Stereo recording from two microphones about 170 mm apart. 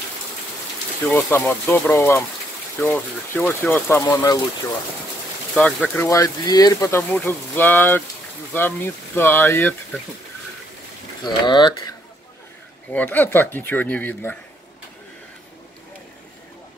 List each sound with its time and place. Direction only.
1.1 s speech: 15° left (ahead or behind)
5.5 s speech: 5° left (ahead or behind)
6.0 s speech: 20° left (ahead or behind)
11.2 s speech: 25° left (ahead or behind)
12.9 s speech: 10° left (ahead or behind)